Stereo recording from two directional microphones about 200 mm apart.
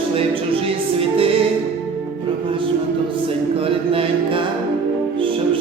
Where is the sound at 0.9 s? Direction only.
25° right (ahead or behind).